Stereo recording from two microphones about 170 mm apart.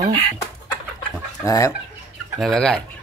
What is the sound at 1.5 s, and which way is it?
Speech, 20° left (ahead or behind).